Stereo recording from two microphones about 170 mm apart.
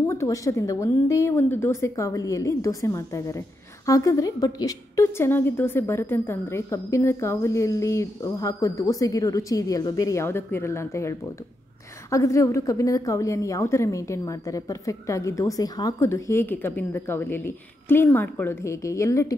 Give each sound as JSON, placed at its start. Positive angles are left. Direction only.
{"t": 0.0, "sound": "a woman's voice", "side_deg": 15}